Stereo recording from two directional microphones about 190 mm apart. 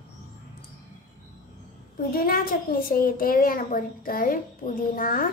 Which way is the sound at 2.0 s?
50° left (ahead or behind).